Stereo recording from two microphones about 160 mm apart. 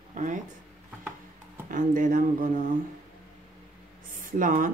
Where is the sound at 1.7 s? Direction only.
55° right (ahead or behind).